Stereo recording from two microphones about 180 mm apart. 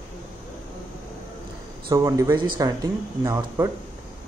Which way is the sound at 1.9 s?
20° right (ahead or behind).